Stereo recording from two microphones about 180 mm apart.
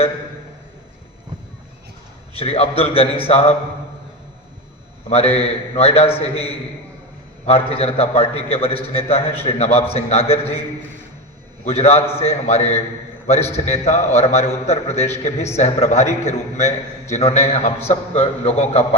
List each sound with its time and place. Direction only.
2.3 s a man's voice: 35° left (ahead or behind)
5.0 s a man's voice: 35° left (ahead or behind)
11.6 s a man's voice: 35° left (ahead or behind)